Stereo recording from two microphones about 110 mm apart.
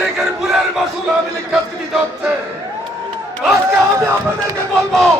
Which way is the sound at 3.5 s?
25° right (ahead or behind).